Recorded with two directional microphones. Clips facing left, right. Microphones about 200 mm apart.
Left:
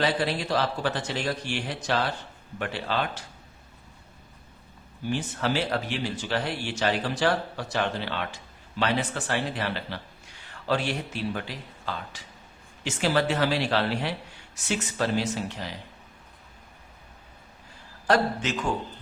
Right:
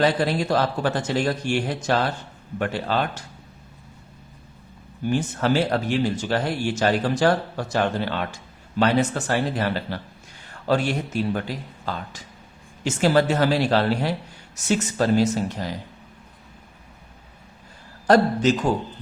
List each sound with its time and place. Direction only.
0.0 s speech: 45° right (ahead or behind)
5.0 s speech: 45° right (ahead or behind)
18.0 s a man's voice: 40° right (ahead or behind)